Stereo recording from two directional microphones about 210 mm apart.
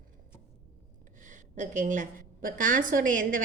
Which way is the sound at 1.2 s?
35° right (ahead or behind).